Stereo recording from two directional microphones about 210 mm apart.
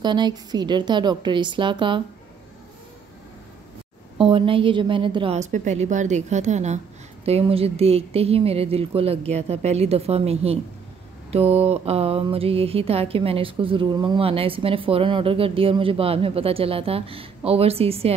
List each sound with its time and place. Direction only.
0.0 s speech: 20° right (ahead or behind)
4.2 s a woman's voice: 25° right (ahead or behind)